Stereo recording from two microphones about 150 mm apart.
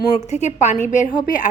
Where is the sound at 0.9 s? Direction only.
60° left (ahead or behind).